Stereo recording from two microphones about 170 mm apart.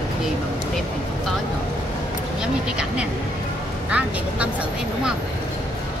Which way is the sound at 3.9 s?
10° right (ahead or behind).